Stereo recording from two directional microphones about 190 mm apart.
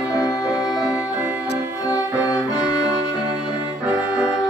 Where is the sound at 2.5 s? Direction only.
20° left (ahead or behind).